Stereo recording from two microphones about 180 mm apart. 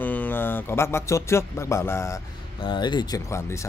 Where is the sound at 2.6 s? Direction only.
25° left (ahead or behind).